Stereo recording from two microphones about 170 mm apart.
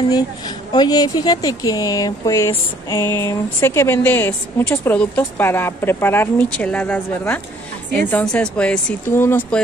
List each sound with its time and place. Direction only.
0.7 s a woman's voice: 20° left (ahead or behind)